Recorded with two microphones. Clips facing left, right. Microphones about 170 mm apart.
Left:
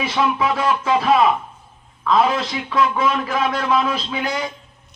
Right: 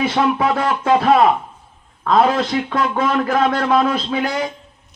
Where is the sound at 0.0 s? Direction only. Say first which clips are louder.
Right 3 dB; 55° right (ahead or behind).